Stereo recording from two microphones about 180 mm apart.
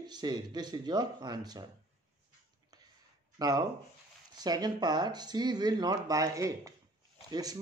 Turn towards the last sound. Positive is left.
turn(degrees=-20)  # may be behind; listen again after turning